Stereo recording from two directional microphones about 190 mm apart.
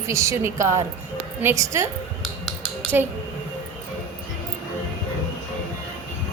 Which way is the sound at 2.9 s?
10° right (ahead or behind).